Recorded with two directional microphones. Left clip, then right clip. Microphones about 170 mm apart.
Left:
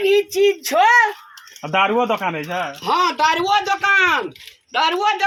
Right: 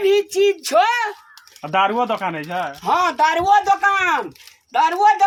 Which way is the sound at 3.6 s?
20° right (ahead or behind).